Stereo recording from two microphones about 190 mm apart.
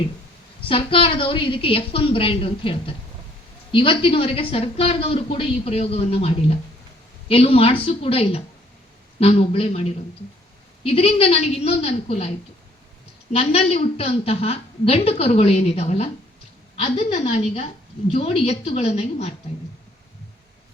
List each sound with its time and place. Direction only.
0.7 s a woman's voice: 30° left (ahead or behind)
13.3 s a woman's voice: 30° left (ahead or behind)